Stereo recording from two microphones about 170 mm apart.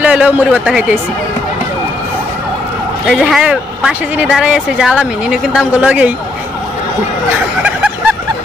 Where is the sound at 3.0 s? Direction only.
5° right (ahead or behind).